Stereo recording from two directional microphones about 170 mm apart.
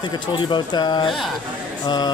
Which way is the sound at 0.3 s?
25° left (ahead or behind).